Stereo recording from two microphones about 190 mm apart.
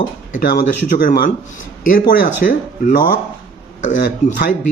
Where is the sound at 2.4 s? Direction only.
50° left (ahead or behind).